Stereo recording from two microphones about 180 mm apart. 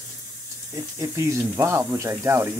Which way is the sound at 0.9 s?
15° right (ahead or behind).